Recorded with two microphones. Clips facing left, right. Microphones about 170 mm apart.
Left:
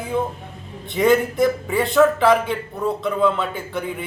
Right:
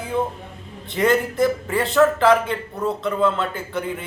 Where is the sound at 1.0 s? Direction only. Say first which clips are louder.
Left 2 dB; centre (ahead or behind).